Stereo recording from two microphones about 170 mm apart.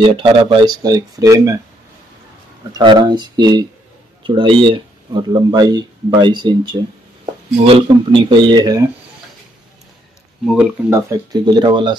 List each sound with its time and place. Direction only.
0.0 s speech: 30° right (ahead or behind)
2.7 s speech: 25° right (ahead or behind)
10.4 s speech: 5° right (ahead or behind)
10.9 s speech: 15° right (ahead or behind)